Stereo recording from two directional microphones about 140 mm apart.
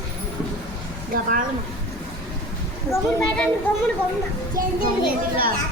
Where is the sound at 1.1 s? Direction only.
80° right.